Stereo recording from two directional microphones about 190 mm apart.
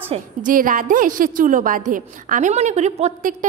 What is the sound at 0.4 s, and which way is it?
A woman's voice, 45° right (ahead or behind).